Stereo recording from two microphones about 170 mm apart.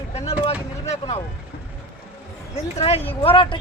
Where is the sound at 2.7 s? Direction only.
35° left (ahead or behind).